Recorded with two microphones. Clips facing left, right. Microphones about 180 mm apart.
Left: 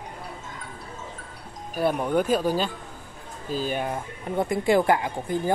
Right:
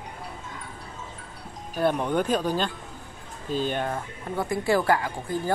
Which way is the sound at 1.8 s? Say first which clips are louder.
Left 1 dB; 5° left (ahead or behind).